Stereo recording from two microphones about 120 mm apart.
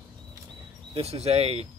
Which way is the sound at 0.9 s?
55° right (ahead or behind).